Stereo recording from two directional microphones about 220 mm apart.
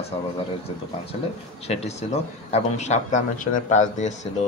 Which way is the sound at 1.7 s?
30° left (ahead or behind).